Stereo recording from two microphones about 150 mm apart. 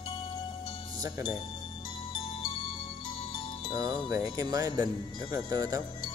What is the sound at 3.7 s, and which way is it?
Speech, 25° right (ahead or behind).